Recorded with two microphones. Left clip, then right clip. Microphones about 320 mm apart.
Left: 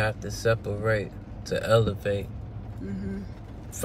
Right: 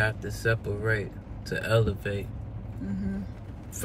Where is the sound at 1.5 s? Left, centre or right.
Centre.